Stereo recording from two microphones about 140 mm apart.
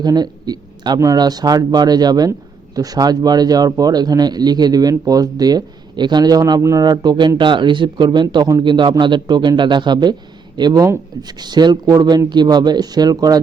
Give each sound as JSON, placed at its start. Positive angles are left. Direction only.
{"t": 0.0, "sound": "speech", "side_deg": -30}